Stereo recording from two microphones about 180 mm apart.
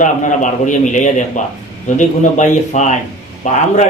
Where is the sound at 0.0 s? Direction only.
45° left (ahead or behind).